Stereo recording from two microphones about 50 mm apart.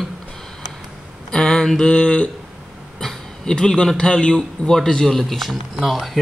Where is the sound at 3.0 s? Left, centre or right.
Centre.